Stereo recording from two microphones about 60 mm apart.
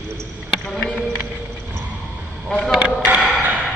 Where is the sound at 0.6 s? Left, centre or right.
Centre.